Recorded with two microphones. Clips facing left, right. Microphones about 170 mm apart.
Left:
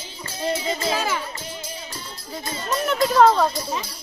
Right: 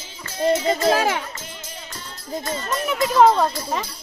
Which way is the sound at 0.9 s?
65° right (ahead or behind).